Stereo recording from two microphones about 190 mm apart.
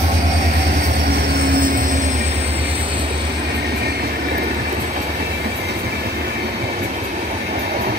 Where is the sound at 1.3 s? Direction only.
50° right (ahead or behind).